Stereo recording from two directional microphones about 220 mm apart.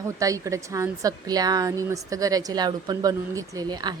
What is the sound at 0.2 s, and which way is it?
Speech, 15° right (ahead or behind).